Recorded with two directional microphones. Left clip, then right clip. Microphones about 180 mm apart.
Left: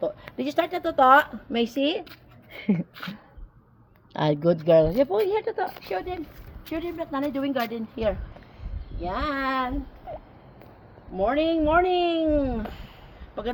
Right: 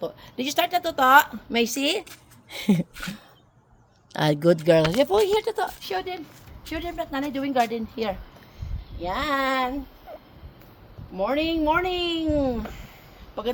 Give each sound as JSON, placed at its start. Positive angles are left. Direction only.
{"t": 0.0, "sound": "a woman's voice", "side_deg": -40}
{"t": 2.5, "sound": "a sound", "side_deg": -85}
{"t": 4.1, "sound": "speech", "side_deg": -20}
{"t": 4.9, "sound": "speech", "side_deg": -75}
{"t": 6.7, "sound": "a woman's voice", "side_deg": -40}
{"t": 7.3, "sound": "speech", "side_deg": -20}
{"t": 9.0, "sound": "speech", "side_deg": -30}
{"t": 11.2, "sound": "speech", "side_deg": -25}
{"t": 12.6, "sound": "speech", "side_deg": 10}